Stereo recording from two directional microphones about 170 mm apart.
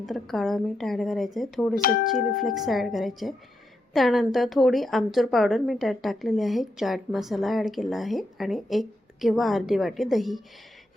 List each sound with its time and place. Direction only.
0.0 s a woman's voice: centre (ahead or behind)
1.7 s speech: 55° left (ahead or behind)
2.6 s a woman's voice: centre (ahead or behind)